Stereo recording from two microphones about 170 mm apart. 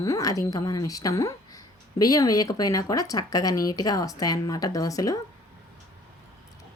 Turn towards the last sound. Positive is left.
turn(degrees=20)  # may be behind; listen again after turning